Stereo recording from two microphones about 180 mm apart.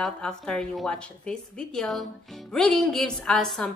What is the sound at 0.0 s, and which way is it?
A woman's voice, 5° left (ahead or behind).